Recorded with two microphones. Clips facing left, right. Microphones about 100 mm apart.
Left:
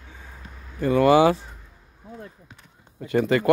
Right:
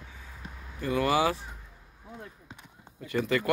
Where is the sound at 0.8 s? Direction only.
35° left (ahead or behind).